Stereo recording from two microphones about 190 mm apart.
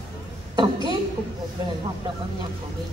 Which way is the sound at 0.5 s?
25° right (ahead or behind).